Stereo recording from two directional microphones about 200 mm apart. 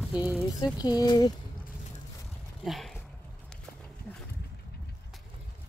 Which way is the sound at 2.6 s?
Centre (ahead or behind).